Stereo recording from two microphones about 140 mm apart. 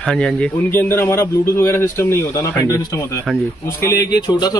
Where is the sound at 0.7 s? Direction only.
15° left (ahead or behind).